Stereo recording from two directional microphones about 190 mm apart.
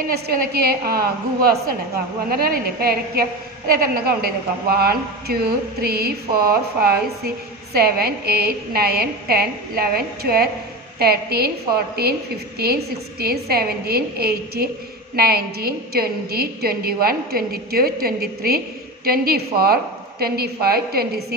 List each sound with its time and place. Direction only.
0.1 s a woman's voice: 55° right (ahead or behind)